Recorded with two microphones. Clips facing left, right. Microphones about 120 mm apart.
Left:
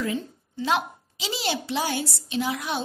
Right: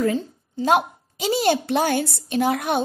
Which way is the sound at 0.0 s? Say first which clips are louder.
Right 6 dB; 40° right (ahead or behind).